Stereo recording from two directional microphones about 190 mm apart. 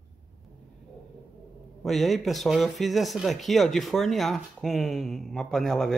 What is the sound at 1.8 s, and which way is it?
Speech, centre (ahead or behind).